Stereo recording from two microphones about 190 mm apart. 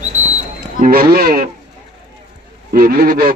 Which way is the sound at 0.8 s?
50° right (ahead or behind).